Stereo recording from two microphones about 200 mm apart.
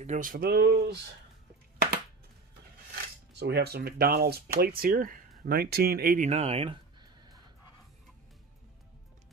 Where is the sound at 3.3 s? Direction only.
55° right (ahead or behind); by 7.4 s 20° right (ahead or behind).